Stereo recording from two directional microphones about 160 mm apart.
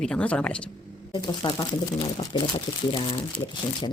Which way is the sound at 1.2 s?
30° left (ahead or behind).